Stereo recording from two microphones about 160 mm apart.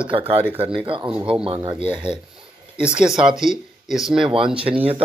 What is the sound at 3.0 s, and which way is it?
Speech, 5° right (ahead or behind).